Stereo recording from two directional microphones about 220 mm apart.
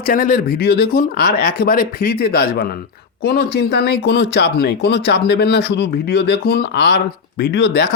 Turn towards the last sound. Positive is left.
turn(degrees=50)  # may be behind; listen again after turning